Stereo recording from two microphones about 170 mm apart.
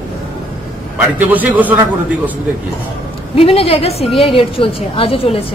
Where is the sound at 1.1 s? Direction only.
10° right (ahead or behind).